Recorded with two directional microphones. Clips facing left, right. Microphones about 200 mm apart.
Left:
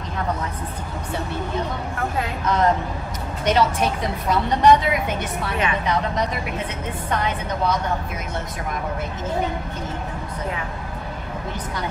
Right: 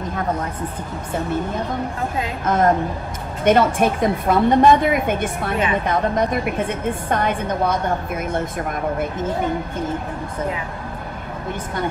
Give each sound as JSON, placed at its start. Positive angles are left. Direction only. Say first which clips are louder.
{"t": 2.4, "sound": "a woman's voice", "louder": "right 3 dB", "side_deg": -50}